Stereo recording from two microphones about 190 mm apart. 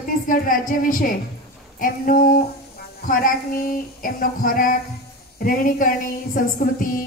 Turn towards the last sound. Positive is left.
turn(degrees=45)  # may be behind; listen again after turning